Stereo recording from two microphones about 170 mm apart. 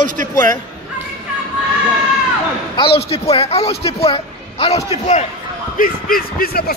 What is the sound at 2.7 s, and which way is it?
A man's voice, 30° left (ahead or behind).